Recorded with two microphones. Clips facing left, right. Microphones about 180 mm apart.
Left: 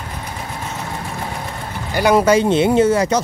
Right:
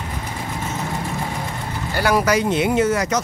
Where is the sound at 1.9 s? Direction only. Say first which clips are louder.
Left 5 dB; 20° left (ahead or behind).